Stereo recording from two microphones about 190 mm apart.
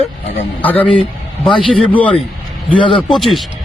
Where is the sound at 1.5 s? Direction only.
25° left (ahead or behind).